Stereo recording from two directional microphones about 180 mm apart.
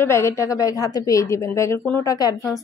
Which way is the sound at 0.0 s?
15° left (ahead or behind).